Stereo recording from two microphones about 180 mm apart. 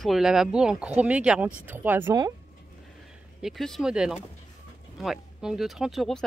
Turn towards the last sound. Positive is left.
turn(degrees=0)  # may be behind; listen again after turning